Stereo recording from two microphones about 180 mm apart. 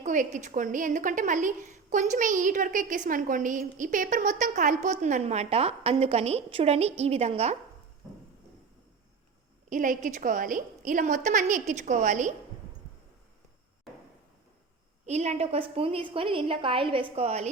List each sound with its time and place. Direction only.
0.0 s a woman's voice: 45° right (ahead or behind)
9.6 s a woman's voice: 45° right (ahead or behind)
15.0 s a woman's voice: 40° right (ahead or behind)